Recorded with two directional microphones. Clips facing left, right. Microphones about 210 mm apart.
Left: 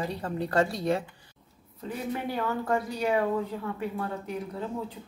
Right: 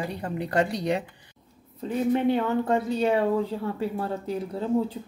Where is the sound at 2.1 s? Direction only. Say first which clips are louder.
Right 8 dB; 25° right (ahead or behind).